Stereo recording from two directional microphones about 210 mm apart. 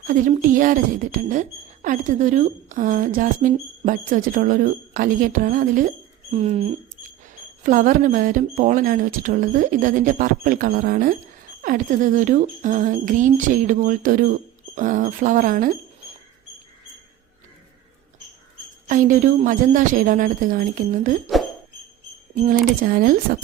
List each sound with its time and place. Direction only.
0.1 s speech: 40° right (ahead or behind)
18.9 s speech: 40° right (ahead or behind)
22.4 s speech: 40° right (ahead or behind)